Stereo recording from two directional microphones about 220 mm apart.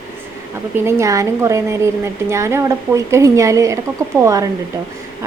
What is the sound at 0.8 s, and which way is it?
A woman's voice, 10° right (ahead or behind).